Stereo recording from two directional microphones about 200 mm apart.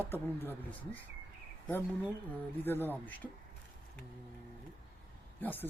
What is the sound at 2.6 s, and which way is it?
Speech, 10° left (ahead or behind).